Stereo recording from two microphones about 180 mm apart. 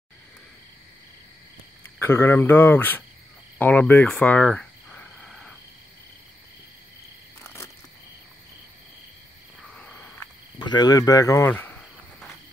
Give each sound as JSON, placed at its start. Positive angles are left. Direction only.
{"t": 2.0, "sound": "speech", "side_deg": 15}
{"t": 3.5, "sound": "a sound", "side_deg": 10}
{"t": 7.4, "sound": "cricket", "side_deg": 15}
{"t": 9.6, "sound": "cricket", "side_deg": 5}
{"t": 10.6, "sound": "cricket", "side_deg": 25}